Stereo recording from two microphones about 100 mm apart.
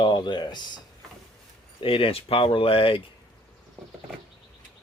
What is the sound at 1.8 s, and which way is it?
Speech, 65° left (ahead or behind).